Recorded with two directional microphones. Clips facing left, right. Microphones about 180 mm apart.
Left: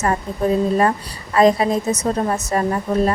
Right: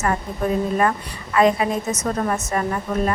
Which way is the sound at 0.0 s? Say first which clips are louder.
Left 3 dB; 30° left (ahead or behind).